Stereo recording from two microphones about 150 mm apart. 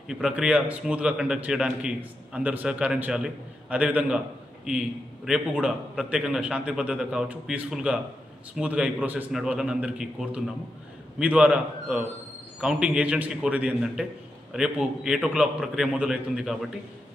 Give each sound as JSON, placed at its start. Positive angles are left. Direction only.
{"t": 0.1, "sound": "a man's voice", "side_deg": -5}